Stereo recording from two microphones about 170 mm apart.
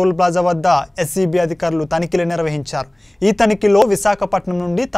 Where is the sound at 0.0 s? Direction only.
Centre (ahead or behind).